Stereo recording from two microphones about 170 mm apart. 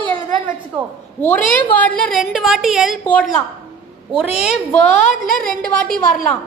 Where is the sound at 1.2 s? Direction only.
10° left (ahead or behind).